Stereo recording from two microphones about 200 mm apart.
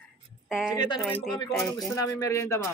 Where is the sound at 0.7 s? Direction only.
20° left (ahead or behind).